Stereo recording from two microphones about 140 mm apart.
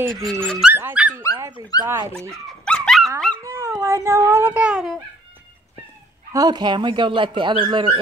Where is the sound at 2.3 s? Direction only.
5° left (ahead or behind).